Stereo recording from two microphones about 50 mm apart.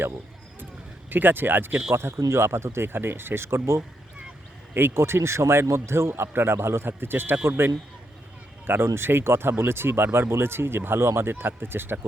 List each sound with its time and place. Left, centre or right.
1.1 s speech: right